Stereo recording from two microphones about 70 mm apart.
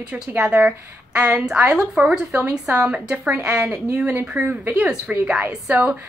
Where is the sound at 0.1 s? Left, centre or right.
Right.